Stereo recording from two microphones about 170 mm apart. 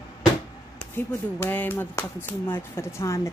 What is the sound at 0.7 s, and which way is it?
Speech, 10° left (ahead or behind).